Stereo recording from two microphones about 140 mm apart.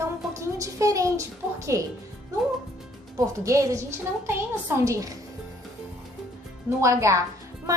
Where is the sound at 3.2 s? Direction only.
25° right (ahead or behind).